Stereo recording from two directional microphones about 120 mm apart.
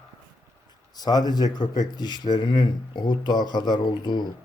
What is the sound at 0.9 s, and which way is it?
Speech, 35° left (ahead or behind).